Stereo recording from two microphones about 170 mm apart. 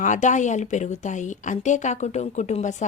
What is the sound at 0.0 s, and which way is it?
Speech, 45° left (ahead or behind).